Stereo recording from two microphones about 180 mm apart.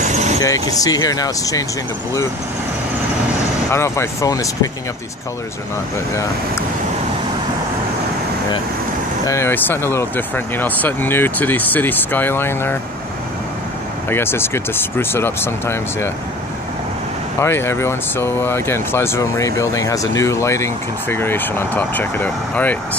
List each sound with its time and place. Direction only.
0.0 s vehicle: 40° right (ahead or behind)
0.4 s speech: 20° left (ahead or behind)
3.7 s speech: 15° left (ahead or behind)
9.2 s speech: 15° left (ahead or behind)
14.0 s speech: 15° left (ahead or behind)
17.4 s speech: 15° left (ahead or behind)